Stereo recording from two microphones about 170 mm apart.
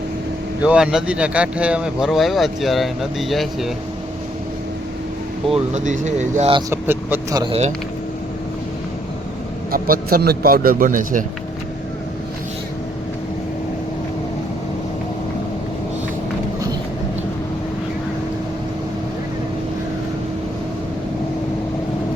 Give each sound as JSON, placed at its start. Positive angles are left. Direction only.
{"t": 0.6, "sound": "speech", "side_deg": -5}
{"t": 5.7, "sound": "speech", "side_deg": -45}
{"t": 6.7, "sound": "speech", "side_deg": -10}
{"t": 9.7, "sound": "a man's voice", "side_deg": -60}